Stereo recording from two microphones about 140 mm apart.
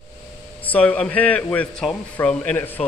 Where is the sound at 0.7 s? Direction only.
10° left (ahead or behind).